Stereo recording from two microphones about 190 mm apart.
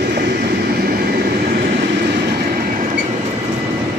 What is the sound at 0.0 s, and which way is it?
Train, 55° right (ahead or behind).